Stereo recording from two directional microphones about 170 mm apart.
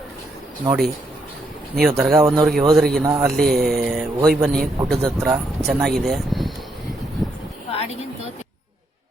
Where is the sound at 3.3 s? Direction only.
Centre (ahead or behind).